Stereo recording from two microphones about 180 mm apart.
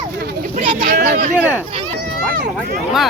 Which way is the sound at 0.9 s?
65° right (ahead or behind).